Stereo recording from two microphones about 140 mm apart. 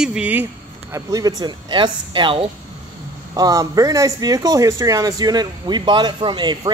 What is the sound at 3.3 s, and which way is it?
Speech, 25° right (ahead or behind).